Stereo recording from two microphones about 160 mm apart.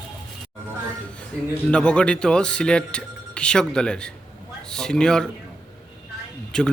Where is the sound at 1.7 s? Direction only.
5° left (ahead or behind).